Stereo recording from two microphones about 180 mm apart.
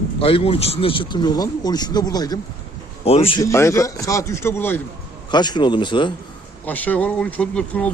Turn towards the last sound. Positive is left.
turn(degrees=5)  # may be behind; listen again after turning